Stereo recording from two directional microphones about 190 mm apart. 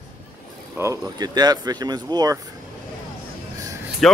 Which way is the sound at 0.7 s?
15° right (ahead or behind).